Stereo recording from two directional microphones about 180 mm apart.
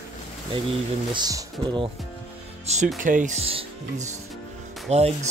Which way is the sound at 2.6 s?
40° right (ahead or behind).